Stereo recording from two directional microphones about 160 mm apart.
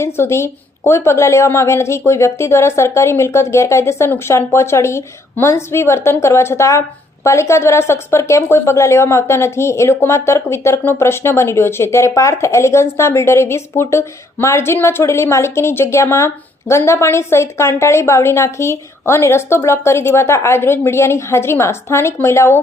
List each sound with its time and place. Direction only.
0.0 s speech: 15° left (ahead or behind)